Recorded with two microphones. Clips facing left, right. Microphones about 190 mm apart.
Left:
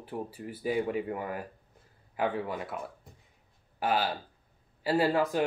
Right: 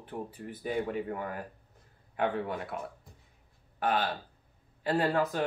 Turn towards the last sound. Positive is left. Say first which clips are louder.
# left 2 dB
turn(degrees=10)  # may be behind; listen again after turning